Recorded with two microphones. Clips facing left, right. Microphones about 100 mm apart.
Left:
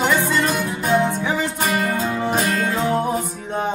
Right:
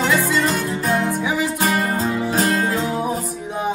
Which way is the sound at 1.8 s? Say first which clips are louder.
Right 1 dB; 40° right (ahead or behind).